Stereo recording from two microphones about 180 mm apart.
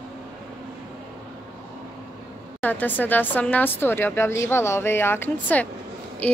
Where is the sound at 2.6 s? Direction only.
10° left (ahead or behind).